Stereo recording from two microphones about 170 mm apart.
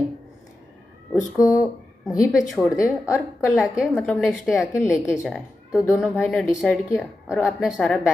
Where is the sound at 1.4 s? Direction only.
20° left (ahead or behind).